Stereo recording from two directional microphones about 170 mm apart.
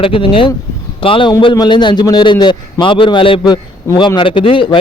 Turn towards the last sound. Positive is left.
turn(degrees=30)  # may be behind; listen again after turning